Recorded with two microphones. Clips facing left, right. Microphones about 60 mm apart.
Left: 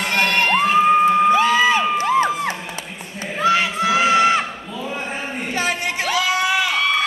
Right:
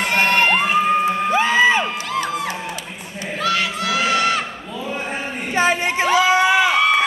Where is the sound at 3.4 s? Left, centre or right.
Centre.